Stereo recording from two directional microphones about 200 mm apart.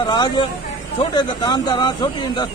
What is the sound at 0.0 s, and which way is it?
Speech, 20° left (ahead or behind).